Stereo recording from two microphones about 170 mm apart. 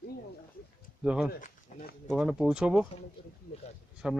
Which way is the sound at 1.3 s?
50° left (ahead or behind).